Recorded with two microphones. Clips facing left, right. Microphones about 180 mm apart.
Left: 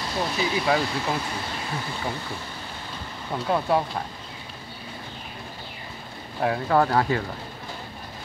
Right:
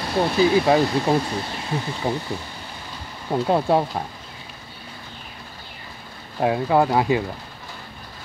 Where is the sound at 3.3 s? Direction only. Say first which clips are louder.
Right 4 dB; 25° right (ahead or behind).